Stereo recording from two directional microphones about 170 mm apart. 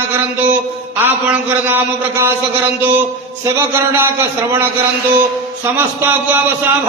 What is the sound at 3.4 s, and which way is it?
Speech, 15° right (ahead or behind).